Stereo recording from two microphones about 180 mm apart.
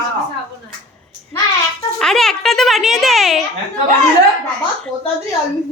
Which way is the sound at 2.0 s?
Centre (ahead or behind).